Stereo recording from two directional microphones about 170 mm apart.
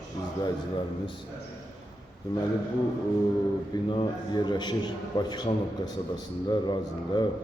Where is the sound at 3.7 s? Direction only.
25° left (ahead or behind).